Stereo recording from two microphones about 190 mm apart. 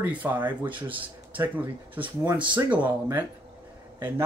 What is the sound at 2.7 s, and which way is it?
Speech, 10° right (ahead or behind).